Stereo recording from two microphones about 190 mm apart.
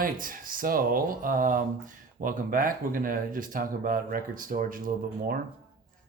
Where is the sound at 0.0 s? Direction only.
45° right (ahead or behind).